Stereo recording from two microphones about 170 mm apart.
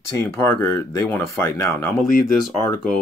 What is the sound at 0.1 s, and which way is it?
Speech, 15° left (ahead or behind).